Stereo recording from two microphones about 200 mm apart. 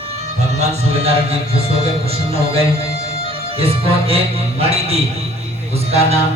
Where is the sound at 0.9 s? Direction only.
30° right (ahead or behind).